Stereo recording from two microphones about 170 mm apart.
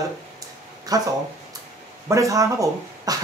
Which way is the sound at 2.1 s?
20° right (ahead or behind).